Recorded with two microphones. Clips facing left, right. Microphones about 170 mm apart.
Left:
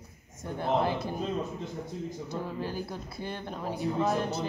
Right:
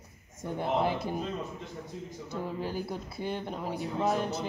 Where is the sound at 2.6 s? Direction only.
15° right (ahead or behind).